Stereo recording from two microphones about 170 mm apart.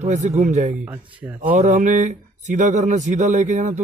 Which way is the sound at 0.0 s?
45° right (ahead or behind).